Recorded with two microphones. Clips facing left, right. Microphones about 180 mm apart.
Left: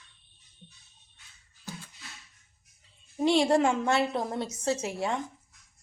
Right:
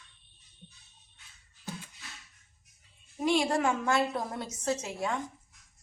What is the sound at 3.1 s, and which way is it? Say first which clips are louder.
A woman's voice: left 4 dB; 30° left (ahead or behind).